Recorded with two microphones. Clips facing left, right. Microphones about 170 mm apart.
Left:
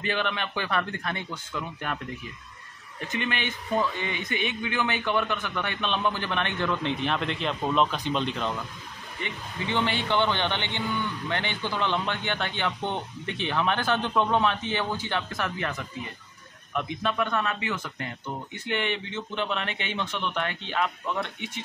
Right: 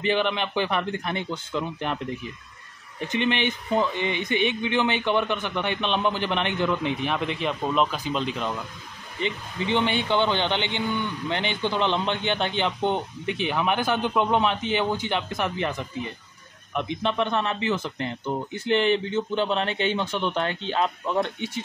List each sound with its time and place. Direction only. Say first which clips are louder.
0.0 s a man's voice: right 5 dB; 20° right (ahead or behind)
3.1 s a man's voice: right 6 dB; 20° right (ahead or behind); by 8.5 s 5° right (ahead or behind)
9.2 s a man's voice: right 6 dB; 20° right (ahead or behind)